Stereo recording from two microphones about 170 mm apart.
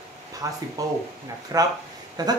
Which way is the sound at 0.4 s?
20° right (ahead or behind).